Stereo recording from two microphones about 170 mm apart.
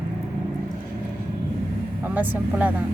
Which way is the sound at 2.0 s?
10° right (ahead or behind).